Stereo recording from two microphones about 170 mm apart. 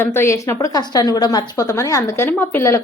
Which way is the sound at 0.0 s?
15° left (ahead or behind).